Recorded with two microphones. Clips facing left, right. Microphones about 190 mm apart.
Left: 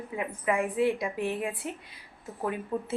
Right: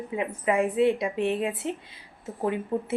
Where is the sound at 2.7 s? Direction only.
25° right (ahead or behind).